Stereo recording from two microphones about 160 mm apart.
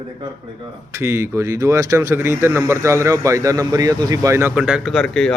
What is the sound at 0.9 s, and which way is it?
Speech, 15° right (ahead or behind).